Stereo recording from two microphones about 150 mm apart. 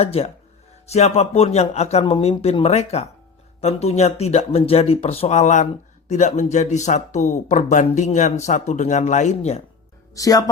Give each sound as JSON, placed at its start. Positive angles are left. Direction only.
{"t": 0.0, "sound": "speech", "side_deg": 45}
{"t": 10.2, "sound": "speech", "side_deg": 25}